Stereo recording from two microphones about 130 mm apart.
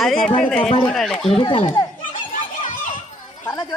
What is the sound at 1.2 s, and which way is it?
Speech, 45° left (ahead or behind).